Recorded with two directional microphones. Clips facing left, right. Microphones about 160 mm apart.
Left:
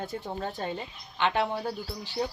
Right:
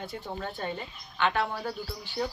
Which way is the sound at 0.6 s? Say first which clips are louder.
Left 1 dB; 30° left (ahead or behind).